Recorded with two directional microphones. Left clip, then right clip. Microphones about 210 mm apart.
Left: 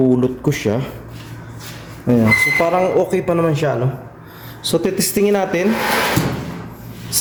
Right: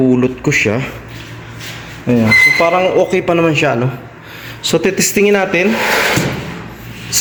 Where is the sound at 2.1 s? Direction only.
15° left (ahead or behind).